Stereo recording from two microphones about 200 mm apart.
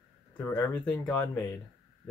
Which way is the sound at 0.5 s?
10° left (ahead or behind).